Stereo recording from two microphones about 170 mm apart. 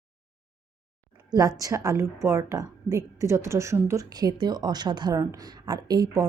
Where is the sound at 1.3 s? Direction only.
20° right (ahead or behind).